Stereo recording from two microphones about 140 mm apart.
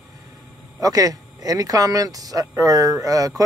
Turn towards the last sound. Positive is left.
turn(degrees=-25)  # may be behind; listen again after turning